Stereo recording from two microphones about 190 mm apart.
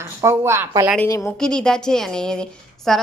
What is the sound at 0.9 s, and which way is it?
Speech, 15° left (ahead or behind).